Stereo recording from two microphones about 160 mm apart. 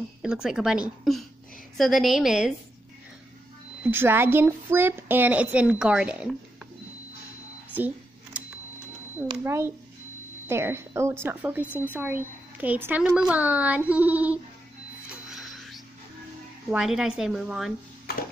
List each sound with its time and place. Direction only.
0.2 s speech: 5° right (ahead or behind)
3.8 s a woman's voice: 15° right (ahead or behind)
7.7 s a sound: 10° right (ahead or behind)
9.4 s a woman's voice: 15° right (ahead or behind)
15.2 s music: centre (ahead or behind)
16.7 s speech: 5° right (ahead or behind)